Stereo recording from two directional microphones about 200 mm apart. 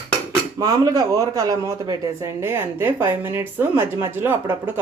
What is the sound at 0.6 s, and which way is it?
Speech, 20° right (ahead or behind).